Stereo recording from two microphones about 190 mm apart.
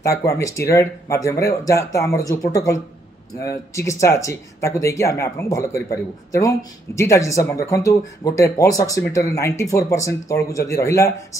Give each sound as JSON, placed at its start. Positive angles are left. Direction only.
{"t": 0.0, "sound": "speech", "side_deg": 15}